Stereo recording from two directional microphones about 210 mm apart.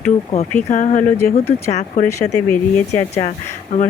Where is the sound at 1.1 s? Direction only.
10° left (ahead or behind).